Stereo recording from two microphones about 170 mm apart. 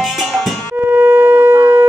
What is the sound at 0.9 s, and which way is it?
Shofar, 15° right (ahead or behind).